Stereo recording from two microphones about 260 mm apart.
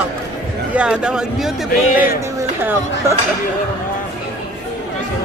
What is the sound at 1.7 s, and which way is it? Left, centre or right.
Speech, left.